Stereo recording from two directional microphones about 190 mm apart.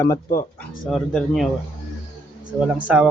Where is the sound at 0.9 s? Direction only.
Centre (ahead or behind).